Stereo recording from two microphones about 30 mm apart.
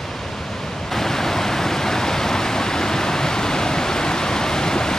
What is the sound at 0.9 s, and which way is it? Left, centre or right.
Pink noise, centre.